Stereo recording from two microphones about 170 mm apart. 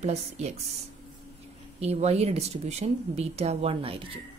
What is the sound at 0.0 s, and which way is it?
Speech, 40° right (ahead or behind).